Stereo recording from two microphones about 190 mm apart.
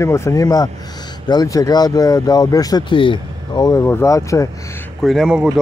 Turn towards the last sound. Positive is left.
turn(degrees=0)  # may be behind; listen again after turning